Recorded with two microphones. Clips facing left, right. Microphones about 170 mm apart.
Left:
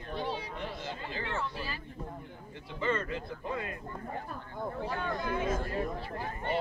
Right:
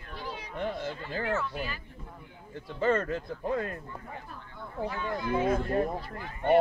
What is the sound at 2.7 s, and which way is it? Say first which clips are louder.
Speech: right 5 dB; 45° right (ahead or behind).